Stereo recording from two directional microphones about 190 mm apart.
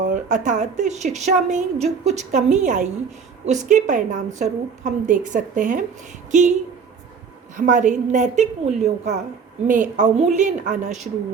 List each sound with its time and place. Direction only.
0.0 s a woman's voice: 40° right (ahead or behind)
7.5 s a woman's voice: 40° right (ahead or behind)